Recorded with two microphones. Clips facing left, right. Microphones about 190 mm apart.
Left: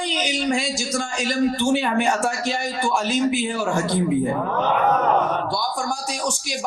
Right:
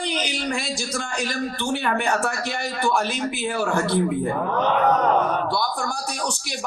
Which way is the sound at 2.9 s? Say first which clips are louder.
Left 4 dB; 60° right (ahead or behind).